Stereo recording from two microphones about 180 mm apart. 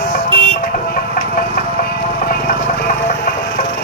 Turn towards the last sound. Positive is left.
turn(degrees=50)  # may be behind; listen again after turning